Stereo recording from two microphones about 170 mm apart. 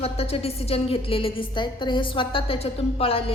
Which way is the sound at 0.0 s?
35° left (ahead or behind).